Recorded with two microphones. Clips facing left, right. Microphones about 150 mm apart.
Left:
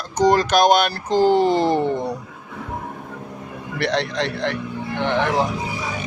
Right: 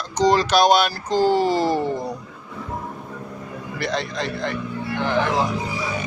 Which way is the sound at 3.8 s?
75° left (ahead or behind).